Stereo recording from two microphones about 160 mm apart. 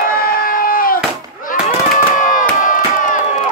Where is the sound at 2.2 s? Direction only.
55° left (ahead or behind).